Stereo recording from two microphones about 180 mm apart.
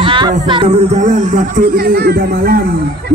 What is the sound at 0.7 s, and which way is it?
A man's voice, 40° right (ahead or behind).